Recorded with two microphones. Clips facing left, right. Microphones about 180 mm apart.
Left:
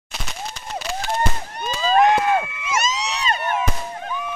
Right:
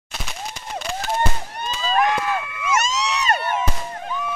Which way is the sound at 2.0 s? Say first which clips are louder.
Left 5 dB; 25° left (ahead or behind).